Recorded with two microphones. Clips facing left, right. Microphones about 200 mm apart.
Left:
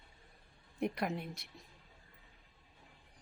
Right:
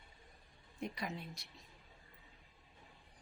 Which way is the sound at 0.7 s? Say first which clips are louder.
Left 7 dB; 60° left (ahead or behind).